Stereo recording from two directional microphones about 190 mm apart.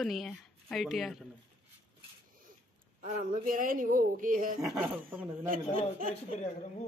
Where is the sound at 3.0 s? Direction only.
40° right (ahead or behind).